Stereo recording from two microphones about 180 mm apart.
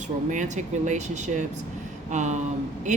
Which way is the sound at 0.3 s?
40° right (ahead or behind).